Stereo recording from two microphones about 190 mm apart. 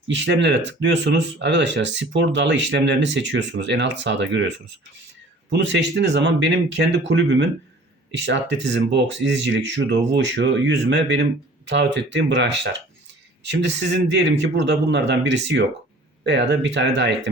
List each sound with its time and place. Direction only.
0.1 s speech: 70° right (ahead or behind)